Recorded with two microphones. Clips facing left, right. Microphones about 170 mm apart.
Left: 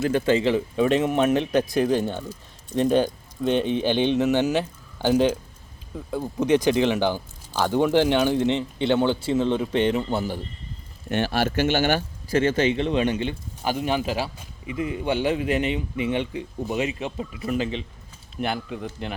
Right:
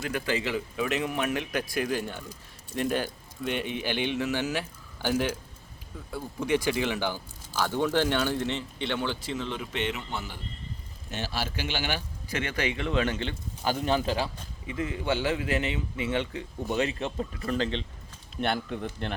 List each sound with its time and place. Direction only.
0.0 s speech: 25° left (ahead or behind)
4.0 s speech: 25° left (ahead or behind)
8.4 s a man's voice: 30° left (ahead or behind)
11.1 s speech: 60° left (ahead or behind)
12.4 s speech: 30° left (ahead or behind); by 18.9 s 5° left (ahead or behind)